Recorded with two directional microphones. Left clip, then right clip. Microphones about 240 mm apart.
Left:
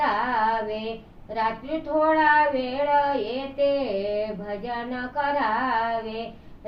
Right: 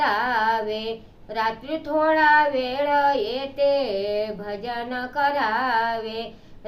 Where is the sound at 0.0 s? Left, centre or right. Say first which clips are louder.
Right 2 dB; centre.